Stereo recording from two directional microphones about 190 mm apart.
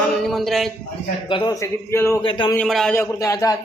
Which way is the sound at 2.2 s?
25° left (ahead or behind).